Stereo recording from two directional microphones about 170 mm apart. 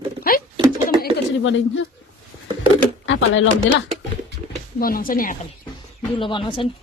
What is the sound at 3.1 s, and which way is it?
Speech, 90° left.